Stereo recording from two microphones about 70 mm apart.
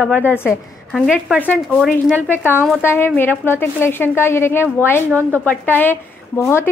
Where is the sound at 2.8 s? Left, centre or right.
Left.